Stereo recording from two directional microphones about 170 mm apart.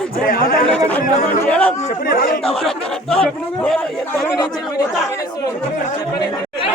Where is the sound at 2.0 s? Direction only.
55° left (ahead or behind).